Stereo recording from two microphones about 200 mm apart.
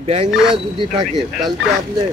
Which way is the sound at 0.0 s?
30° right (ahead or behind).